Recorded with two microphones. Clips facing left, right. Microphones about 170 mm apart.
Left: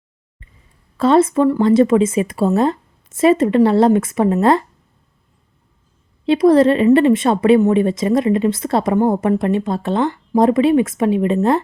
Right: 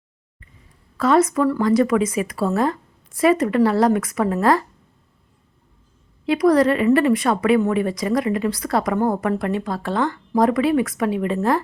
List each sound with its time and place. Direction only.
0.9 s a woman's voice: 25° left (ahead or behind)
6.2 s a woman's voice: 25° left (ahead or behind)